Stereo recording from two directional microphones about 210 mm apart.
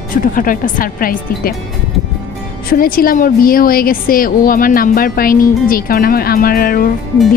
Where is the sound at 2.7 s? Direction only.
45° left (ahead or behind).